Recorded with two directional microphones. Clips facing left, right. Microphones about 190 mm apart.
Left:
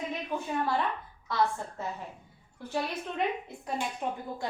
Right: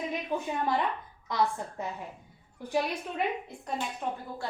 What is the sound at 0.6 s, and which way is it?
A woman's voice, 15° right (ahead or behind).